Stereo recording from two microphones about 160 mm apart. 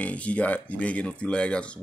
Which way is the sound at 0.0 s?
10° left (ahead or behind).